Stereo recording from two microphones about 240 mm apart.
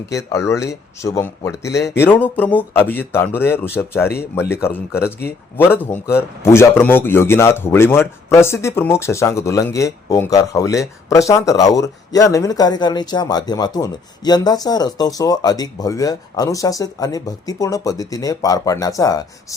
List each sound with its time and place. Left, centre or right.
0.3 s a man's voice: centre
1.6 s speech: left
2.0 s a man's voice: centre